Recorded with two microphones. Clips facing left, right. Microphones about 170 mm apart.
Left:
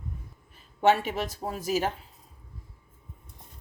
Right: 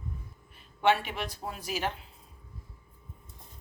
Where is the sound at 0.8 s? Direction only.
45° left (ahead or behind).